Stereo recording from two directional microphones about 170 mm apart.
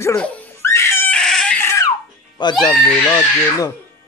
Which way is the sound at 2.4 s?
25° left (ahead or behind).